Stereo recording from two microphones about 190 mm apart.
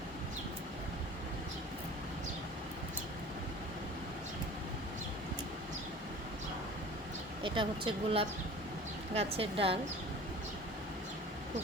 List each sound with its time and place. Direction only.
7.4 s speech: 25° right (ahead or behind)